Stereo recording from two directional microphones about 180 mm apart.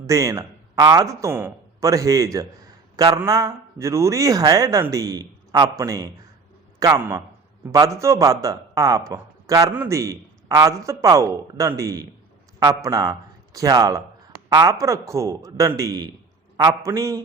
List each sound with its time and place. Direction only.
0.0 s a man's voice: 15° right (ahead or behind)